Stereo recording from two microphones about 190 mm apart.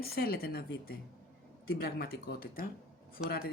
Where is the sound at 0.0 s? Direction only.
55° left (ahead or behind).